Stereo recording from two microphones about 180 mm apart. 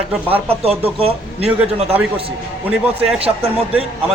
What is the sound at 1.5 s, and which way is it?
A man's voice, 5° right (ahead or behind).